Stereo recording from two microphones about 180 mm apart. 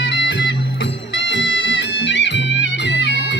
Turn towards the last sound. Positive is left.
turn(degrees=75)  # may be behind; listen again after turning